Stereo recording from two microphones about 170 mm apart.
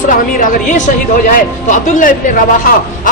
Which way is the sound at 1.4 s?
50° left (ahead or behind).